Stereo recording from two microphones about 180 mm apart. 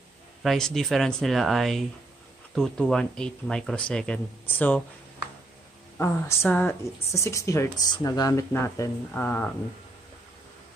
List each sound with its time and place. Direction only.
0.4 s speech: centre (ahead or behind)
5.9 s speech: 15° left (ahead or behind)